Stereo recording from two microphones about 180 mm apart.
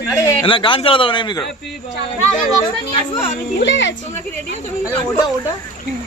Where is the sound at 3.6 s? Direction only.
80° left.